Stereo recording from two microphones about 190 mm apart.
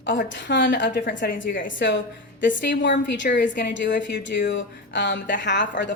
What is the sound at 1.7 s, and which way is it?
A woman's voice, 75° left (ahead or behind).